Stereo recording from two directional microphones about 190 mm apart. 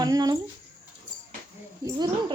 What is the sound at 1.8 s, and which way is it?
Speech, 20° right (ahead or behind).